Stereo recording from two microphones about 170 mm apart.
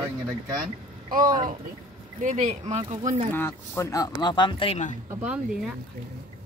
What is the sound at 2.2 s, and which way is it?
Speech, 45° right (ahead or behind).